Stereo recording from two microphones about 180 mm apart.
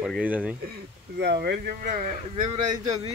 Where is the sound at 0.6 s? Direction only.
65° right (ahead or behind); by 2.1 s 50° right (ahead or behind).